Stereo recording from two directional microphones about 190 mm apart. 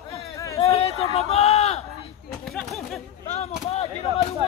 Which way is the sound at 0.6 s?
30° left (ahead or behind).